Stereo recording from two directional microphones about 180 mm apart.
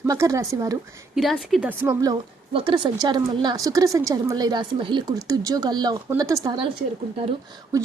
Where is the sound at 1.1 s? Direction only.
Centre (ahead or behind).